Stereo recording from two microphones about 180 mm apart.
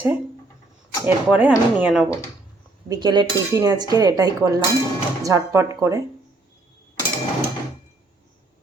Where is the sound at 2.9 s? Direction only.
25° right (ahead or behind).